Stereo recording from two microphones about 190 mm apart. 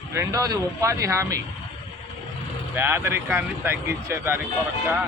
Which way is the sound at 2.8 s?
10° right (ahead or behind).